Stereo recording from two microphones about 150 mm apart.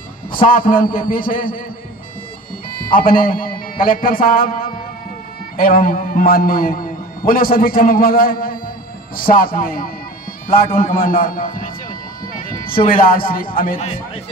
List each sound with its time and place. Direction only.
0.5 s a man's voice: 65° left (ahead or behind)
2.7 s a man's voice: 70° left (ahead or behind)
13.7 s a man's voice: 40° left (ahead or behind)